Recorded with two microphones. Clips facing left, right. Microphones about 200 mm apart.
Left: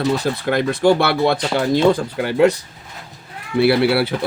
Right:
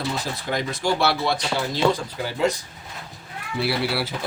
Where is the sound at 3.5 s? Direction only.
60° left (ahead or behind).